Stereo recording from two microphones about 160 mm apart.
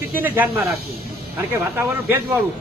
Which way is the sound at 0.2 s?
10° right (ahead or behind).